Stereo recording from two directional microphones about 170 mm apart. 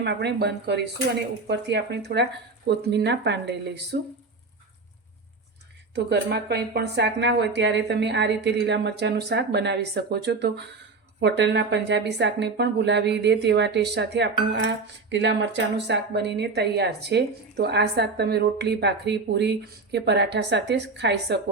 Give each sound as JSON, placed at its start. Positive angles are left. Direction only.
{"t": 0.0, "sound": "speech", "side_deg": -85}
{"t": 5.9, "sound": "speech", "side_deg": -80}